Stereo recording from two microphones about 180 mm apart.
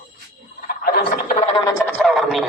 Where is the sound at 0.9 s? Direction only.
45° left (ahead or behind).